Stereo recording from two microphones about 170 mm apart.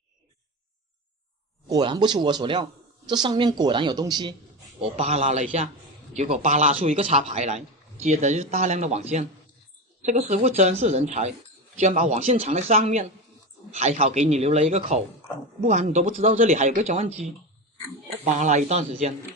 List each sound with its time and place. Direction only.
1.7 s a woman's voice: 25° right (ahead or behind)
4.8 s speech: 40° right (ahead or behind)
18.3 s a man's voice: 45° right (ahead or behind)